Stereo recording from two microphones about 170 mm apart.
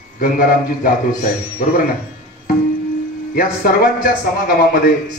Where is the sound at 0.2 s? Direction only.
60° left (ahead or behind).